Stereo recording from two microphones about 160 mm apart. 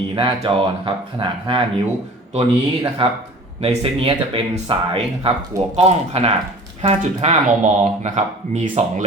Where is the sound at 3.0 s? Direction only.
35° right (ahead or behind).